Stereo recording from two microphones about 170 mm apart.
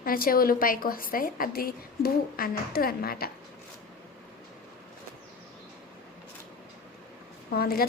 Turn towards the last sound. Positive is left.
turn(degrees=65)  # may be behind; listen again after turning